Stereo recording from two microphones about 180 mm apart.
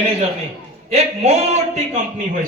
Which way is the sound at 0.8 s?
35° right (ahead or behind).